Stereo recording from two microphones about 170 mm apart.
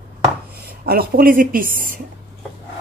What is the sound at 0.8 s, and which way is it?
Speech, 60° right (ahead or behind).